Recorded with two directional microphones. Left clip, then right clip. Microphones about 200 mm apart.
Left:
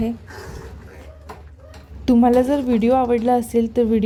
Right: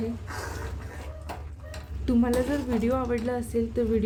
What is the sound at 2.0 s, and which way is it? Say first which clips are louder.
A woman's voice: left 10 dB; 30° left (ahead or behind).